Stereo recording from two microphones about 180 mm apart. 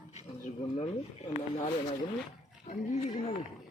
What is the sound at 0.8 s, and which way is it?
Speech, 35° left (ahead or behind).